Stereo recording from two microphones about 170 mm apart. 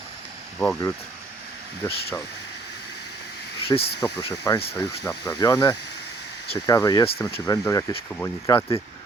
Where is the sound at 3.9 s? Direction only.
20° left (ahead or behind).